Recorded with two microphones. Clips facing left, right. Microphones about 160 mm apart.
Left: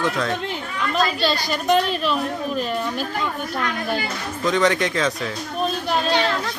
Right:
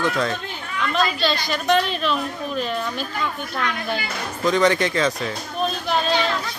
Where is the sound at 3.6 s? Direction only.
40° left (ahead or behind).